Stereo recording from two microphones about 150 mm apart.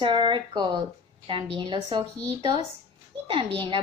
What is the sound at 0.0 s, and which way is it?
A woman's voice, 35° right (ahead or behind).